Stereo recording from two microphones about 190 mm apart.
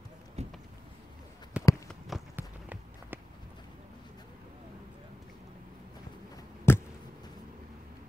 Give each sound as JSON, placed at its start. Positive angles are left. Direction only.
{"t": 0.4, "sound": "vehicle", "side_deg": -35}
{"t": 1.6, "sound": "fireworks", "side_deg": -5}
{"t": 1.9, "sound": "run", "side_deg": 0}
{"t": 6.3, "sound": "a sound", "side_deg": 10}